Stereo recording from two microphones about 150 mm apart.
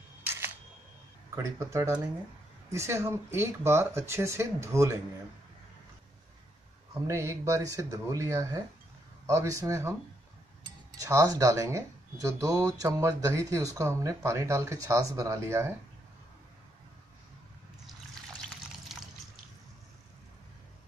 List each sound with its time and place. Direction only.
1.3 s speech: 20° right (ahead or behind)
6.9 s speech: 20° right (ahead or behind)